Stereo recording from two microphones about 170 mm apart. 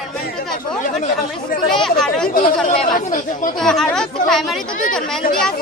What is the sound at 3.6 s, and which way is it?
Speech, centre (ahead or behind).